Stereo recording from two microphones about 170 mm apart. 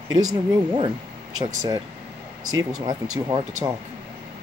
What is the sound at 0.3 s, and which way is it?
Speech, 25° right (ahead or behind).